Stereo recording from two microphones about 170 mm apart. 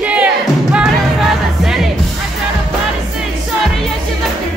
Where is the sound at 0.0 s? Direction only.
10° right (ahead or behind).